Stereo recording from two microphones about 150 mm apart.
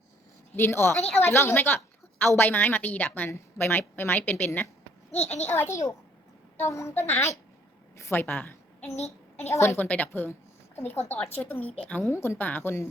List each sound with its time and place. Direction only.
0.5 s a woman's voice: 15° left (ahead or behind)
9.0 s a child's voice: 45° left (ahead or behind)
9.5 s a woman's voice: 15° left (ahead or behind)